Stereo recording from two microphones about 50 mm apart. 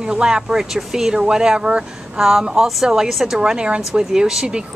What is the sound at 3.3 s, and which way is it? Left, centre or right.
Speech, centre.